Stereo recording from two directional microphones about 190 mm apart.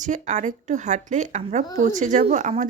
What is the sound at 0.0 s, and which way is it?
Speech, 40° right (ahead or behind).